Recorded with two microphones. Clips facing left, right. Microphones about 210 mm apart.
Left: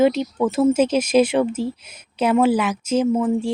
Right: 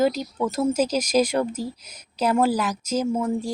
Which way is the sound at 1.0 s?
5° left (ahead or behind).